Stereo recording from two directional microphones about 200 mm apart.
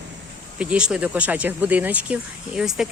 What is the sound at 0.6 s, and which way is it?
Speech, 5° right (ahead or behind).